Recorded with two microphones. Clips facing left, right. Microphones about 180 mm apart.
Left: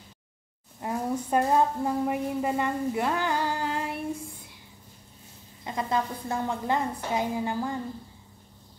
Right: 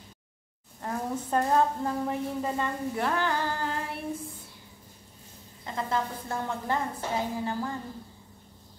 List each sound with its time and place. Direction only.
0.7 s a woman's voice: 15° left (ahead or behind)
5.6 s a woman's voice: 15° left (ahead or behind)